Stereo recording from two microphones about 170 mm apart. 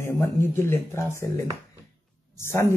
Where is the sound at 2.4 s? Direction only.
15° left (ahead or behind).